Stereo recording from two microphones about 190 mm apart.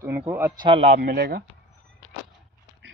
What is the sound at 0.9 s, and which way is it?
Speech, 50° right (ahead or behind).